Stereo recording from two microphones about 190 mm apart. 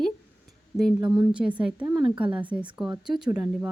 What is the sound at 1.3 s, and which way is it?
Speech, 5° right (ahead or behind).